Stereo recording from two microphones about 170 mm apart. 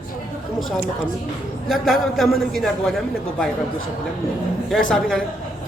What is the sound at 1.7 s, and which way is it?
A man's voice, centre (ahead or behind).